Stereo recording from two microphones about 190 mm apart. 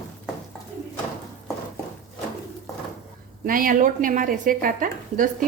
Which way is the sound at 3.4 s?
50° right (ahead or behind).